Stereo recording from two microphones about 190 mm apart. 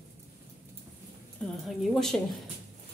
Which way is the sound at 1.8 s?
Centre (ahead or behind).